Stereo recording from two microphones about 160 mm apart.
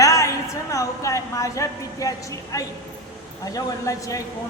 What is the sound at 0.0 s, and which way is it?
A woman's voice, 20° left (ahead or behind).